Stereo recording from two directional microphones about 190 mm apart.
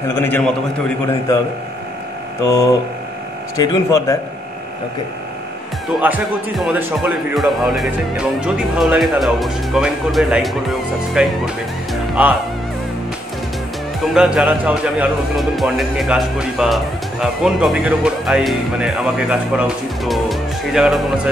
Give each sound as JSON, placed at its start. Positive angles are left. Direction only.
{"t": 0.1, "sound": "a man's voice", "side_deg": 10}
{"t": 2.4, "sound": "speech", "side_deg": 20}
{"t": 5.9, "sound": "speech", "side_deg": -5}
{"t": 14.1, "sound": "speech", "side_deg": -5}